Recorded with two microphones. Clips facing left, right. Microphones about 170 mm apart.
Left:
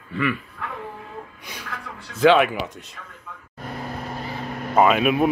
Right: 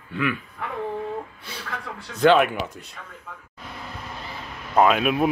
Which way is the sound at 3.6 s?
45° left (ahead or behind).